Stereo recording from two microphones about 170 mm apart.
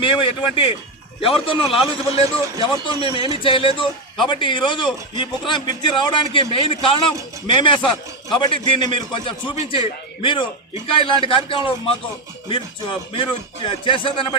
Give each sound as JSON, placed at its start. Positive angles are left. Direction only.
{"t": 0.0, "sound": "a man's voice", "side_deg": 30}